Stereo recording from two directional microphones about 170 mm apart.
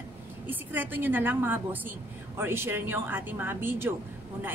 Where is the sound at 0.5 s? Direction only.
10° right (ahead or behind).